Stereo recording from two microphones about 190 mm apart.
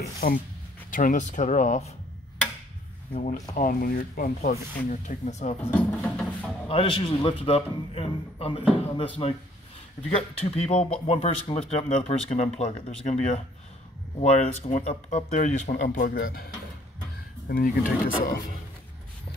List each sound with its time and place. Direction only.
0.2 s speech: 50° left (ahead or behind)
3.1 s speech: 45° left (ahead or behind)
5.6 s music: 10° left (ahead or behind)
6.7 s a man's voice: 30° left (ahead or behind)
10.4 s speech: 35° left (ahead or behind); by 16.4 s 55° left (ahead or behind)
17.5 s speech: 50° left (ahead or behind)